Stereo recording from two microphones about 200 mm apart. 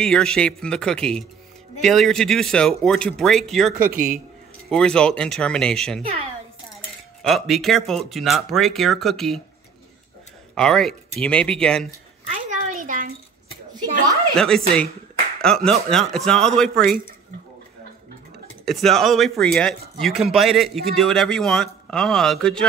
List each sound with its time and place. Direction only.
0.0 s a man's voice: 5° left (ahead or behind)
3.7 s speech: 45° right (ahead or behind)
4.6 s a man's voice: 5° left (ahead or behind)
7.2 s a man's voice: centre (ahead or behind)
10.5 s a man's voice: 5° left (ahead or behind)
12.7 s a sound: 40° right (ahead or behind)
14.3 s a man's voice: 5° left (ahead or behind)
18.7 s a man's voice: centre (ahead or behind)